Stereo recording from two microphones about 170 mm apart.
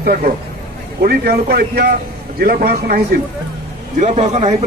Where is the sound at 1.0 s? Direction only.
65° right (ahead or behind).